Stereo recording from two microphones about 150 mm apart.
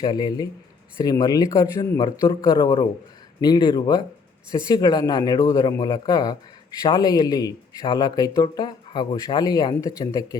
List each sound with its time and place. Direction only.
0.0 s speech: 30° left (ahead or behind)